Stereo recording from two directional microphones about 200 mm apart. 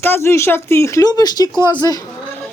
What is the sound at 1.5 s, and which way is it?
Speech, 15° right (ahead or behind).